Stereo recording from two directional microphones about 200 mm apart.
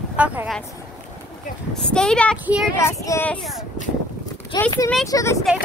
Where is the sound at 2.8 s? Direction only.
15° left (ahead or behind).